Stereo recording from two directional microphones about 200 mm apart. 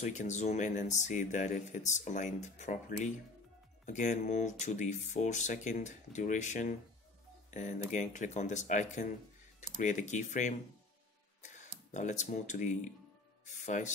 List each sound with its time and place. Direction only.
0.0 s speech: 35° left (ahead or behind)
7.9 s speech: 40° left (ahead or behind)